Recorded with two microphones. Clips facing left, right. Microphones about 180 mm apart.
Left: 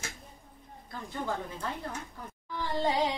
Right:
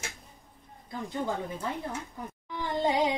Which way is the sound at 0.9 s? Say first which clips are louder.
Right 3 dB; 20° right (ahead or behind).